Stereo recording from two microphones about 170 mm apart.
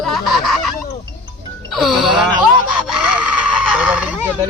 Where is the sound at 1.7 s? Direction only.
Centre (ahead or behind).